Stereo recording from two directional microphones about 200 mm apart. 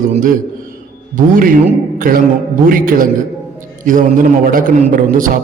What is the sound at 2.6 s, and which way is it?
A man's voice, 45° right (ahead or behind).